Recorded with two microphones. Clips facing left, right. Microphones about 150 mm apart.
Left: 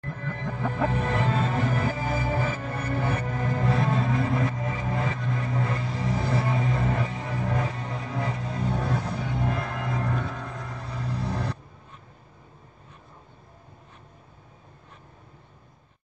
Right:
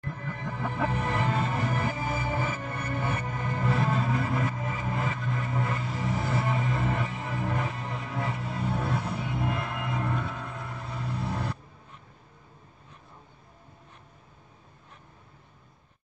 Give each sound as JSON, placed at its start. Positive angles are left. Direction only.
{"t": 0.1, "sound": "music", "side_deg": 50}
{"t": 4.1, "sound": "vehicle", "side_deg": 35}